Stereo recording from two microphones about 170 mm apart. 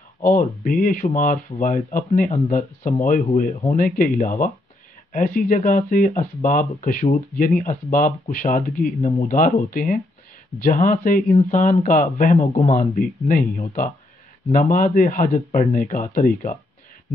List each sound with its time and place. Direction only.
0.2 s speech: 55° left (ahead or behind)
12.4 s speech: 35° left (ahead or behind)
12.7 s speech: 55° left (ahead or behind)
14.5 s speech: 55° left (ahead or behind)